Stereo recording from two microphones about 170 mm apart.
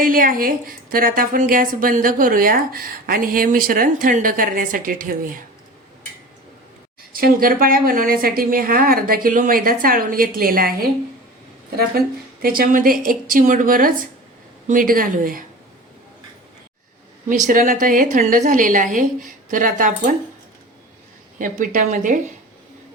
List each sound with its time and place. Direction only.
0.0 s a woman's voice: 55° right (ahead or behind)
7.1 s a woman's voice: 60° right (ahead or behind)
11.9 s a woman's voice: 60° right (ahead or behind)
17.2 s a woman's voice: 50° right (ahead or behind)
21.3 s a woman's voice: 50° right (ahead or behind)